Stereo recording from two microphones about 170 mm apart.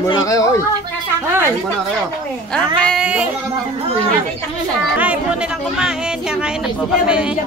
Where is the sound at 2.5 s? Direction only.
5° left (ahead or behind).